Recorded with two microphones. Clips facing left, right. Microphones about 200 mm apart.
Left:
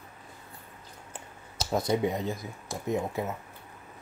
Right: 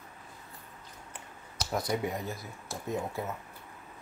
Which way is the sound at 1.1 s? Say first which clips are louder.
Left 3 dB; 25° left (ahead or behind).